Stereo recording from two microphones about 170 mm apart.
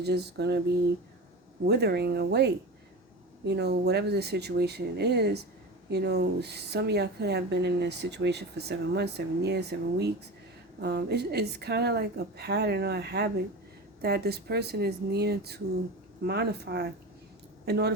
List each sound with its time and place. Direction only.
0.0 s a woman's voice: 75° right (ahead or behind)
1.6 s a woman's voice: 75° right (ahead or behind)